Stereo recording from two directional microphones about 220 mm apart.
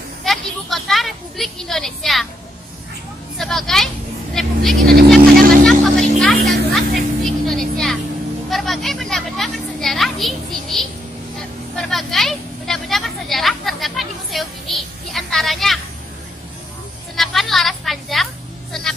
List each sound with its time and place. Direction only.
0.2 s a woman's voice: centre (ahead or behind)
3.3 s speech: centre (ahead or behind)
5.7 s vehicle: centre (ahead or behind)
8.5 s children playing: centre (ahead or behind)
11.7 s vehicle: centre (ahead or behind)
17.1 s music: centre (ahead or behind)